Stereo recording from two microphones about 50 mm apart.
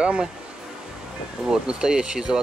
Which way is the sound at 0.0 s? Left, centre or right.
Centre.